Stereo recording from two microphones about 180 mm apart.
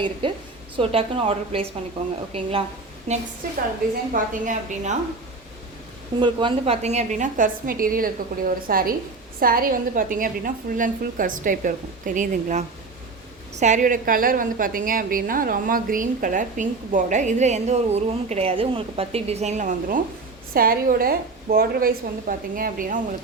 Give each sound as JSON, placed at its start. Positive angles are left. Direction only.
{"t": 0.2, "sound": "a woman's voice", "side_deg": -30}
{"t": 6.1, "sound": "a woman's voice", "side_deg": -25}